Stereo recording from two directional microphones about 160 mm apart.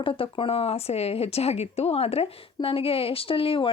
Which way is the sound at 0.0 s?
35° left (ahead or behind).